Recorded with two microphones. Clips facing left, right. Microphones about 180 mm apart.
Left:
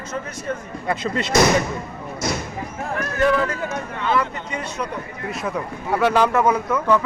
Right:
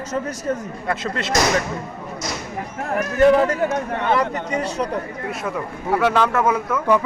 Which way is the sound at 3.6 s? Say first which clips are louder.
Right 6 dB; 60° right (ahead or behind).